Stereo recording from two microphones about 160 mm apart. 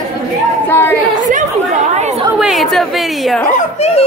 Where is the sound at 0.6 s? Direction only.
15° left (ahead or behind).